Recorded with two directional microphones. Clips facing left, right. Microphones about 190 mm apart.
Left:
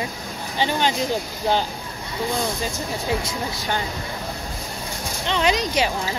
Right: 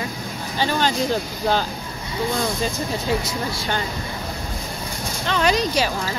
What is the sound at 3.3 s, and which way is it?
Speech, 15° left (ahead or behind).